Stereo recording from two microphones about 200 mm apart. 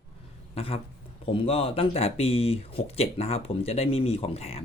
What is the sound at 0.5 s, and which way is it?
Speech, 30° left (ahead or behind).